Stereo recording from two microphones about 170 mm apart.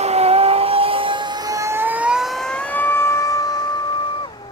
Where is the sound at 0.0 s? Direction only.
40° right (ahead or behind); by 4.3 s 25° left (ahead or behind).